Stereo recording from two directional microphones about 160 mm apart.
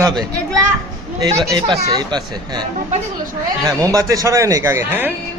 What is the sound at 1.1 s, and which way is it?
A man's voice, 20° right (ahead or behind).